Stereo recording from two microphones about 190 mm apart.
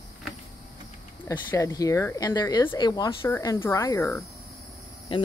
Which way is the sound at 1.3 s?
15° left (ahead or behind).